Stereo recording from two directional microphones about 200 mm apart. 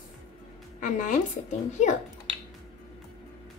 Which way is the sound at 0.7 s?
40° left (ahead or behind).